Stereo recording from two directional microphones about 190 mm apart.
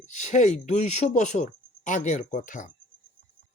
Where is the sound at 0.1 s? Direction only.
40° left (ahead or behind).